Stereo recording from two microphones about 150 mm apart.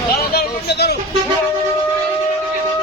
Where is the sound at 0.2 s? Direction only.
90° left.